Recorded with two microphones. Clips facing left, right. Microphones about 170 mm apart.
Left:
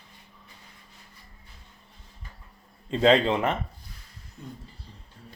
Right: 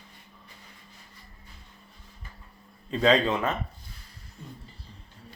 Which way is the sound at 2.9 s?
25° left (ahead or behind).